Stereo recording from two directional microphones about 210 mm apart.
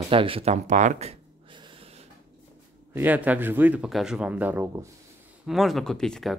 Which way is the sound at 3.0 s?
10° right (ahead or behind).